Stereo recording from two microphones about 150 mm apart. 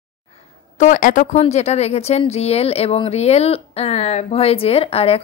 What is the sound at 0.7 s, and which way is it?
Speech, 60° left (ahead or behind).